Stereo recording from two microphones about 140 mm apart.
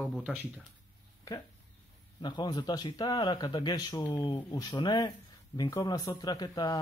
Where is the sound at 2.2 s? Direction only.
30° left (ahead or behind).